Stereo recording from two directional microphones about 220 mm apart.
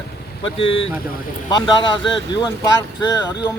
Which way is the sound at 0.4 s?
25° left (ahead or behind).